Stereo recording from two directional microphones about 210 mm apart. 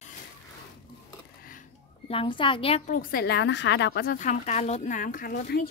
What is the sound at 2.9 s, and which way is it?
Speech, 45° left (ahead or behind).